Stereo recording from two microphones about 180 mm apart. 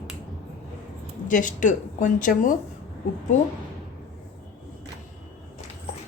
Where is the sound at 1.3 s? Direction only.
45° left (ahead or behind).